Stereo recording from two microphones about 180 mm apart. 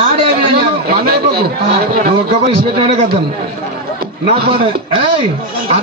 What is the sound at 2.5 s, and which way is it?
Speech, 30° right (ahead or behind).